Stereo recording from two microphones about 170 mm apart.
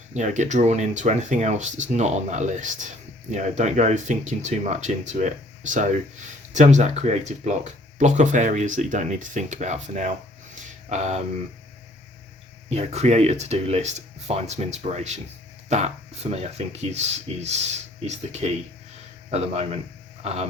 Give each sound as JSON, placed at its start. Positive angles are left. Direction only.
{"t": 0.1, "sound": "speech", "side_deg": -45}
{"t": 12.7, "sound": "speech", "side_deg": -40}